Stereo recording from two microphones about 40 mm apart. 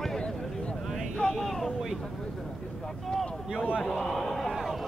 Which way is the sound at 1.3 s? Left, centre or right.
Centre.